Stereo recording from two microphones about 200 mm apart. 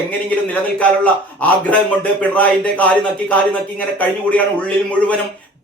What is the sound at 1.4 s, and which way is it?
Speech, 10° left (ahead or behind).